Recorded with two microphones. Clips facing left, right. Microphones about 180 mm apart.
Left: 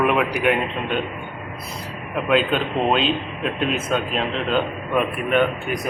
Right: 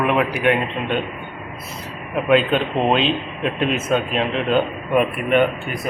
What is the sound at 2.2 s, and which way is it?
A man's voice, centre (ahead or behind).